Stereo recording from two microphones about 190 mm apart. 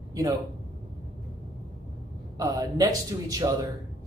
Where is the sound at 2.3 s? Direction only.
20° right (ahead or behind).